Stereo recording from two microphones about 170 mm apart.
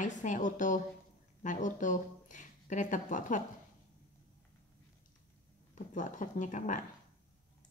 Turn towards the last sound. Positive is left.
turn(degrees=45)  # may be behind; listen again after turning